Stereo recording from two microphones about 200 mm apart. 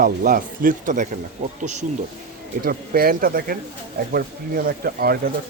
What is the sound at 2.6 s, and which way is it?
Speech, 50° right (ahead or behind).